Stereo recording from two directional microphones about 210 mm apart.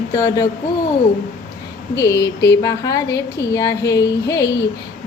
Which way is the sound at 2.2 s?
55° left (ahead or behind).